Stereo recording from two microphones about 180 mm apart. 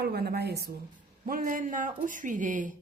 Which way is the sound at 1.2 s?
50° right (ahead or behind).